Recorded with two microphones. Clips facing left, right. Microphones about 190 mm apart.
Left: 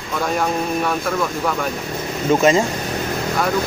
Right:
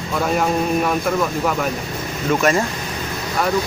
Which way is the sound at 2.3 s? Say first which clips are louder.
Left 3 dB; 20° left (ahead or behind).